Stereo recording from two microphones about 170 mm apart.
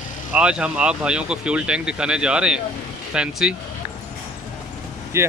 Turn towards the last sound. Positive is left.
turn(degrees=-15)  # may be behind; listen again after turning